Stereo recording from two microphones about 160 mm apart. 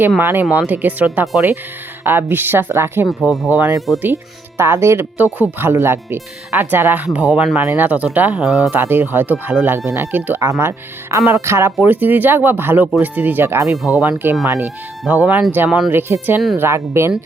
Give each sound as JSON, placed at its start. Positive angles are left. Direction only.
{"t": 0.2, "sound": "speech", "side_deg": -15}
{"t": 3.1, "sound": "speech", "side_deg": 0}
{"t": 4.0, "sound": "speech", "side_deg": -15}
{"t": 8.8, "sound": "speech", "side_deg": -15}